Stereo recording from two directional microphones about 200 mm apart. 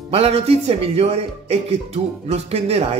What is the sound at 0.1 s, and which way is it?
Speech, 30° right (ahead or behind).